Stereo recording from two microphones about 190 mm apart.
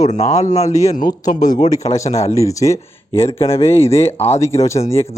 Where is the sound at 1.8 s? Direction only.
15° left (ahead or behind).